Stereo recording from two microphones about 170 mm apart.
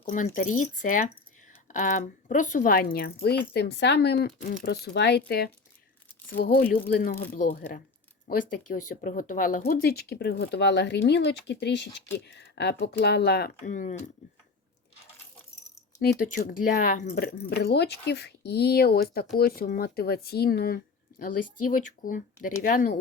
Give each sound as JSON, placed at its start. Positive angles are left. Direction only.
{"t": 0.0, "sound": "a woman's voice", "side_deg": 50}
{"t": 6.4, "sound": "a woman's voice", "side_deg": 60}
{"t": 8.3, "sound": "a woman's voice", "side_deg": 55}
{"t": 13.7, "sound": "speech", "side_deg": 50}
{"t": 16.1, "sound": "a woman's voice", "side_deg": 60}
{"t": 17.2, "sound": "a woman's voice", "side_deg": 70}